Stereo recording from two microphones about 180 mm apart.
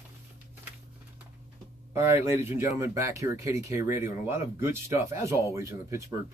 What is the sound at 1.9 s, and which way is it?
Speech, 15° right (ahead or behind).